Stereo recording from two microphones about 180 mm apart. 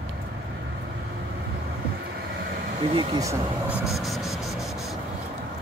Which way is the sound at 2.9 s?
20° right (ahead or behind).